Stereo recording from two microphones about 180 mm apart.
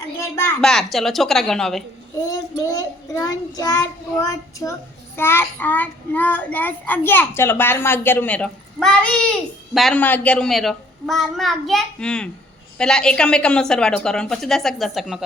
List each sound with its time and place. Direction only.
0.2 s a child's voice: 15° left (ahead or behind)
0.6 s a child's voice: 5° left (ahead or behind)
2.3 s child singing: 20° left (ahead or behind)
9.7 s a child's voice: 5° left (ahead or behind)